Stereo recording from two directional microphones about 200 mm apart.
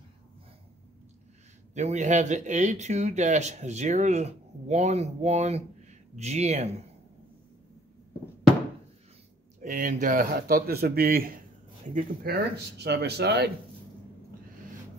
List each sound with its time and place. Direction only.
1.7 s speech: 35° right (ahead or behind)
9.6 s speech: 40° right (ahead or behind)
12.3 s speech: 60° right (ahead or behind)